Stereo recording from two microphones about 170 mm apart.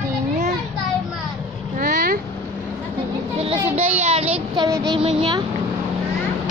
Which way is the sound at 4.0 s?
35° right (ahead or behind).